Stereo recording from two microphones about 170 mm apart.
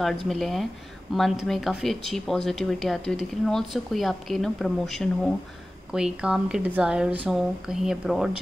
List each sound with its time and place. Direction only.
0.3 s speech: centre (ahead or behind)